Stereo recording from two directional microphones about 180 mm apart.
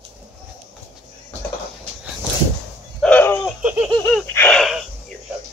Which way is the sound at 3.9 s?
10° left (ahead or behind).